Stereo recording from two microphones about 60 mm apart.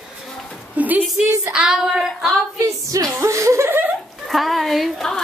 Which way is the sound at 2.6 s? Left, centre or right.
Right.